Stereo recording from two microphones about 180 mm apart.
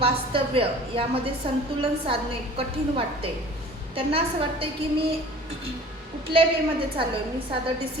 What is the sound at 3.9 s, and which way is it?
Speech, 30° right (ahead or behind).